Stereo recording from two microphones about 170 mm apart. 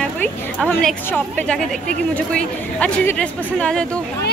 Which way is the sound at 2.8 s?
5° left (ahead or behind).